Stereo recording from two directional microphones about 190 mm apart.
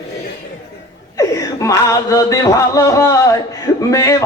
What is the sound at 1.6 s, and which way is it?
Music, 15° left (ahead or behind).